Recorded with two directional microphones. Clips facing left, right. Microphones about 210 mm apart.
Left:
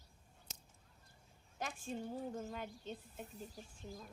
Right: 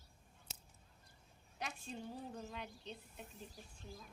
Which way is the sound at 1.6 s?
45° left (ahead or behind).